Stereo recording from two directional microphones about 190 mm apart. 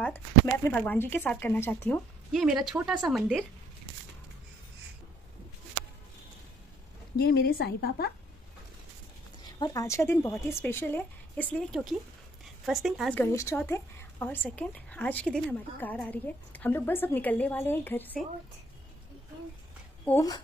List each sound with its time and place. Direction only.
0.7 s a woman's voice: 10° left (ahead or behind)
7.2 s a woman's voice: 55° left (ahead or behind)
9.6 s a woman's voice: 15° left (ahead or behind); by 13.2 s centre (ahead or behind)
13.2 s a woman's voice: 15° left (ahead or behind)
20.1 s a woman's voice: 20° left (ahead or behind)